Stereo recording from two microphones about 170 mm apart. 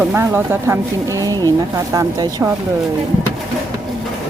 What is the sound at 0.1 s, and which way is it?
Speech, 15° right (ahead or behind).